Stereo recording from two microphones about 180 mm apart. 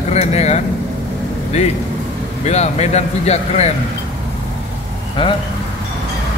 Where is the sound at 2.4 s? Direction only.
40° left (ahead or behind).